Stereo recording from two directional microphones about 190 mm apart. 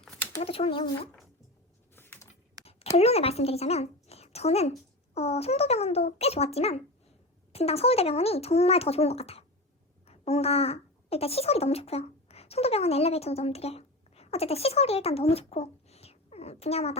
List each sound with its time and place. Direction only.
0.0 s a sound: 5° left (ahead or behind)
0.3 s speech: 30° left (ahead or behind)
2.9 s a child's voice: 35° left (ahead or behind)